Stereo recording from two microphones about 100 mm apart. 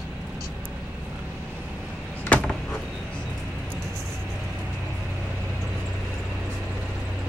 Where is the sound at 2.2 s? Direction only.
15° left (ahead or behind).